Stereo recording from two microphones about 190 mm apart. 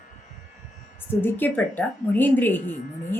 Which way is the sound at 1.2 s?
10° left (ahead or behind).